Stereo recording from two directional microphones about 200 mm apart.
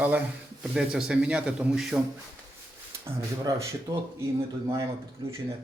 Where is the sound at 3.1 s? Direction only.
15° right (ahead or behind).